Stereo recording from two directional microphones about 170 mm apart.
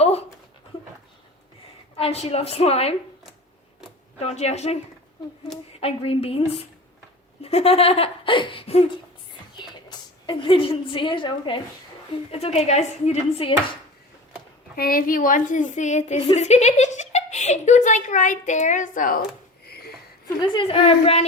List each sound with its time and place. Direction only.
0.0 s dog: 40° left (ahead or behind)
2.0 s speech: 35° left (ahead or behind)
4.2 s speech: 40° left (ahead or behind)
5.8 s a woman's voice: 35° left (ahead or behind)
14.8 s a woman's voice: 60° left (ahead or behind)
19.6 s a sound: 65° left (ahead or behind)
20.2 s speech: 25° left (ahead or behind)